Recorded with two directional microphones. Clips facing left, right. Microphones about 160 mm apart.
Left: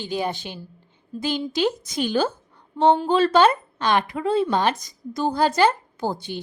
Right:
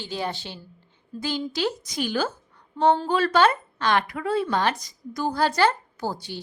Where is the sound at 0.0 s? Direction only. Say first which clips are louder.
Left 4 dB; 15° left (ahead or behind).